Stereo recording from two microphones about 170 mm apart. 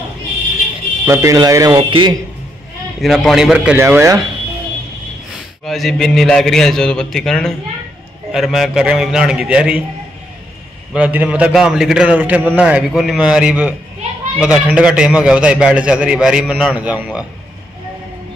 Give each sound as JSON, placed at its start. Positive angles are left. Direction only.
{"t": 1.0, "sound": "speech", "side_deg": -20}
{"t": 1.8, "sound": "speech", "side_deg": -30}
{"t": 3.0, "sound": "a man's voice", "side_deg": 0}
{"t": 5.7, "sound": "a man's voice", "side_deg": 0}
{"t": 10.9, "sound": "a man's voice", "side_deg": -10}